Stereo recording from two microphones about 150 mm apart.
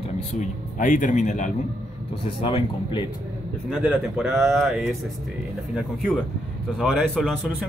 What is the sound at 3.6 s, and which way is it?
Speech, 5° right (ahead or behind).